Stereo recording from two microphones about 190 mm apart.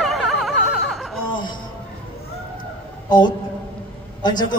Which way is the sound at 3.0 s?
20° left (ahead or behind).